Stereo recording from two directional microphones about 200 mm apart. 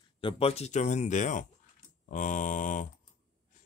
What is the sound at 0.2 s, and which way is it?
Speech, 25° left (ahead or behind).